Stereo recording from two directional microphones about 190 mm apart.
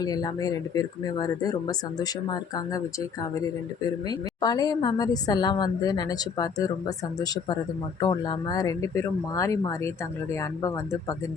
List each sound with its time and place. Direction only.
0.0 s a woman's voice: 20° left (ahead or behind)
3.8 s a woman's voice: 20° left (ahead or behind)